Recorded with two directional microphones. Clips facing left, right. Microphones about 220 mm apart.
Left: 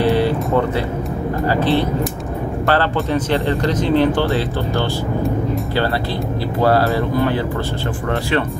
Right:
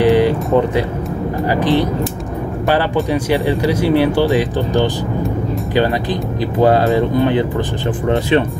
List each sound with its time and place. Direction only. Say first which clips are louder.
0.0 s a sound: right 4 dB; 15° right (ahead or behind)
1.5 s speech: right 2 dB; 15° right (ahead or behind)
6.6 s speech: right 3 dB; 15° right (ahead or behind)